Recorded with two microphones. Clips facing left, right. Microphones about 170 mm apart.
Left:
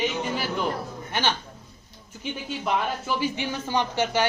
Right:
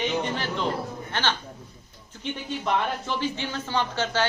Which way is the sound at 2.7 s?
10° left (ahead or behind).